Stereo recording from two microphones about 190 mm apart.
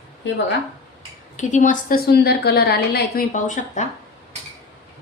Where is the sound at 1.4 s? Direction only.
40° left (ahead or behind).